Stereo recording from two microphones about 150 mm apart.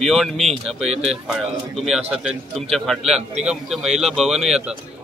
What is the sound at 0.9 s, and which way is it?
Speech, 45° right (ahead or behind).